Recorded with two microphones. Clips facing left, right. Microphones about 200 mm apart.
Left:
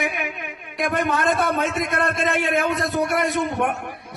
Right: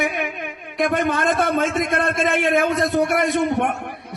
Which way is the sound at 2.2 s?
60° right (ahead or behind).